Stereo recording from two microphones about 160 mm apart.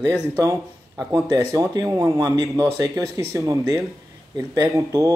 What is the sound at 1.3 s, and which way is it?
Speech, 20° right (ahead or behind).